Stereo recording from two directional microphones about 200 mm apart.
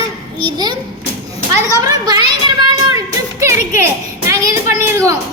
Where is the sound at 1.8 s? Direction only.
20° right (ahead or behind).